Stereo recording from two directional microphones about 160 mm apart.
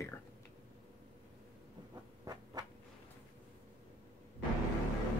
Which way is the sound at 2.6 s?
25° right (ahead or behind).